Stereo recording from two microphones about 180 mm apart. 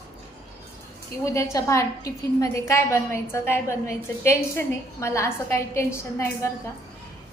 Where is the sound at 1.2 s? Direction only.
15° left (ahead or behind).